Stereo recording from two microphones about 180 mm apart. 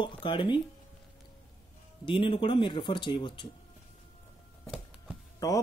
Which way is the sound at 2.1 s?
30° left (ahead or behind).